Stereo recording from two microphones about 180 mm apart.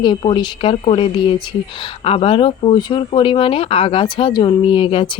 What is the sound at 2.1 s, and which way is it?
Speech, 30° left (ahead or behind).